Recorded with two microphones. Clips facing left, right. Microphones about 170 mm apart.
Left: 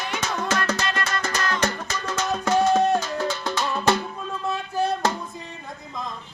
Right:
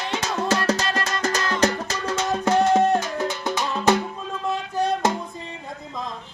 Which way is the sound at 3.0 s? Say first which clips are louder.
Right 1 dB; 20° right (ahead or behind).